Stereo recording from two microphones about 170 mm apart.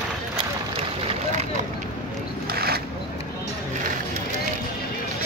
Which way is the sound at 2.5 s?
65° right (ahead or behind).